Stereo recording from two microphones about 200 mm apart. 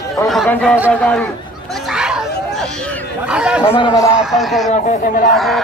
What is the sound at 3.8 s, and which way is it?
Speech, 15° left (ahead or behind).